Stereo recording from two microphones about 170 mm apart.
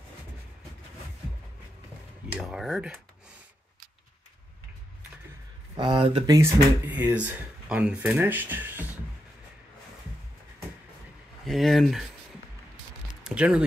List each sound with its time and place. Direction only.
2.3 s speech: centre (ahead or behind)
5.8 s speech: 25° right (ahead or behind)
6.2 s speech: 20° right (ahead or behind)
6.9 s speech: 10° right (ahead or behind)
11.4 s speech: centre (ahead or behind)
13.2 s speech: 5° right (ahead or behind)